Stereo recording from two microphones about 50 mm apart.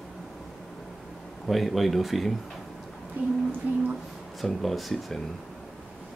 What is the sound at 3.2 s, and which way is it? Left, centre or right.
Speech, right.